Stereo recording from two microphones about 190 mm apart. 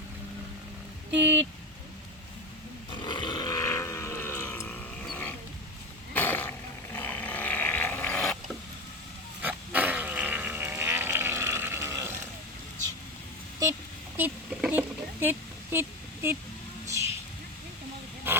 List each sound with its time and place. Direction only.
1.1 s speech: 10° right (ahead or behind)
3.0 s vehicle: 25° left (ahead or behind); by 5.3 s 5° left (ahead or behind)
6.1 s roaring cats: 10° left (ahead or behind)
9.4 s fart: 10° right (ahead or behind)
14.2 s a sound: 10° right (ahead or behind)
18.3 s pig: 10° right (ahead or behind)